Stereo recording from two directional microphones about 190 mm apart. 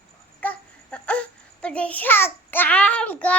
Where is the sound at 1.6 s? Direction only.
5° left (ahead or behind).